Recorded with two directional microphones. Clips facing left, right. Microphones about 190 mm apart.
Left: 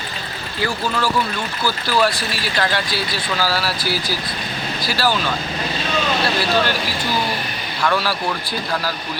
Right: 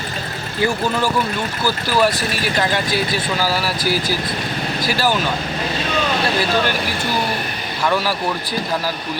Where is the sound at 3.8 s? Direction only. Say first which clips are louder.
Right 3 dB; 45° right (ahead or behind).